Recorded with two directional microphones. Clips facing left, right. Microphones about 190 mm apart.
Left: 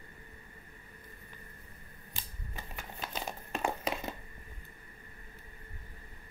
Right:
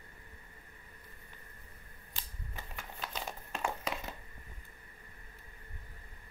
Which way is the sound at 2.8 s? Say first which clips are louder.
Left 2 dB; 15° left (ahead or behind).